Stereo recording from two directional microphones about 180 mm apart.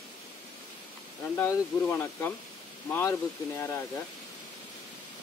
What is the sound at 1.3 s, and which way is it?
Speech, 15° left (ahead or behind).